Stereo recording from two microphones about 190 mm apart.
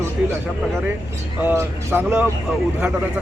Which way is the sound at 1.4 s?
10° right (ahead or behind).